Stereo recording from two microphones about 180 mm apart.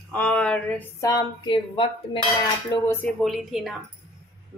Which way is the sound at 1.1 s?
25° left (ahead or behind).